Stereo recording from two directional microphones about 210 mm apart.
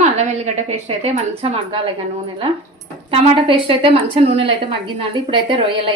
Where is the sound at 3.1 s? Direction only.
25° right (ahead or behind).